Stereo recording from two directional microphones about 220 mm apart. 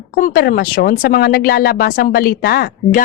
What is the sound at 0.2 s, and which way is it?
A woman's voice, 40° left (ahead or behind).